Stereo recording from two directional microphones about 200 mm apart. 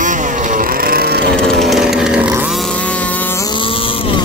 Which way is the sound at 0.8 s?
50° right (ahead or behind).